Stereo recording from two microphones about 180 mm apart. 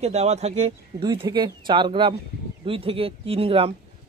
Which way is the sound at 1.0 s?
25° right (ahead or behind).